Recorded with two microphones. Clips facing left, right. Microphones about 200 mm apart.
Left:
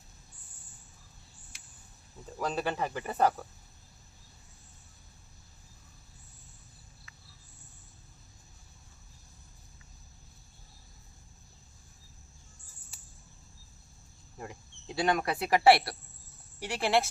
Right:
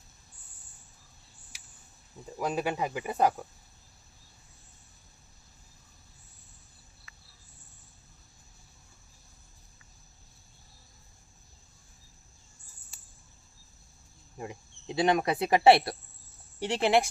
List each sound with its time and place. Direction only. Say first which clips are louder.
2.4 s speech: right 2 dB; 10° right (ahead or behind)
14.3 s speech: right 3 dB; 20° right (ahead or behind)